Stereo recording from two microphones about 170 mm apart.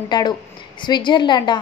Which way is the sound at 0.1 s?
25° left (ahead or behind).